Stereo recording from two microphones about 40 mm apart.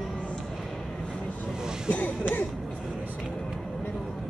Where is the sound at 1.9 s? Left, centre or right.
Left.